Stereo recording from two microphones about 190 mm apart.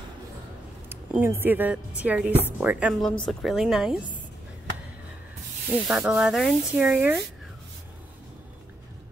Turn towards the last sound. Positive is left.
turn(degrees=-10)  # may be behind; listen again after turning